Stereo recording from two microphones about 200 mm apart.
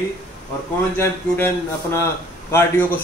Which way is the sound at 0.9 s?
10° left (ahead or behind).